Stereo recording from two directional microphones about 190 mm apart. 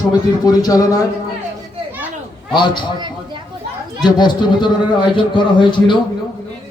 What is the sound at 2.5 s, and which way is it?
Speech, 25° left (ahead or behind).